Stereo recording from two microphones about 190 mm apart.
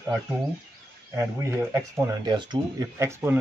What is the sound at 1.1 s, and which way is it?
Speech, 10° right (ahead or behind).